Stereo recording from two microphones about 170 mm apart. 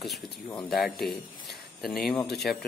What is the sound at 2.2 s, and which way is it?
Speech, centre (ahead or behind).